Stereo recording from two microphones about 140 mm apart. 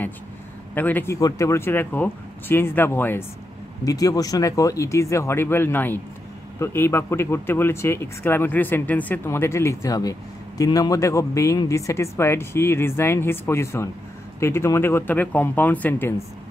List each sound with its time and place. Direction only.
0.7 s speech: 15° left (ahead or behind)